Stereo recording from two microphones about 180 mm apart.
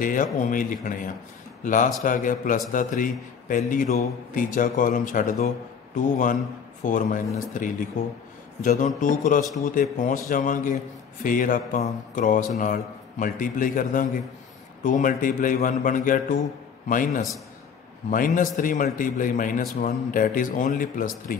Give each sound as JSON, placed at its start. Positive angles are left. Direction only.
{"t": 0.0, "sound": "a man's voice", "side_deg": 45}